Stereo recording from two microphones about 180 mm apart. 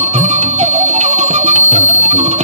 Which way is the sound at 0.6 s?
40° right (ahead or behind).